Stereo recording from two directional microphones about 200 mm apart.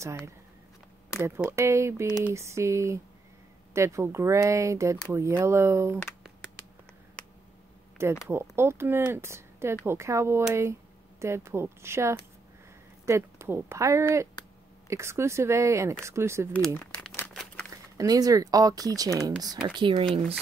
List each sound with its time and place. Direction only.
1.2 s speech: 15° right (ahead or behind)
8.3 s speech: 10° right (ahead or behind)
16.5 s crumpling: 5° left (ahead or behind)
17.9 s speech: 20° right (ahead or behind)